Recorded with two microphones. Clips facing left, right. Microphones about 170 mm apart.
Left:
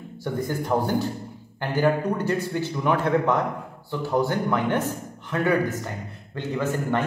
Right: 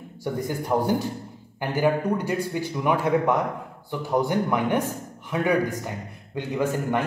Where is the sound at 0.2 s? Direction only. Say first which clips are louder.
Left 1 dB; 10° right (ahead or behind).